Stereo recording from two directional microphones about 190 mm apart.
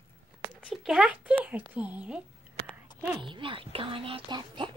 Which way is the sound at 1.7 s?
5° right (ahead or behind).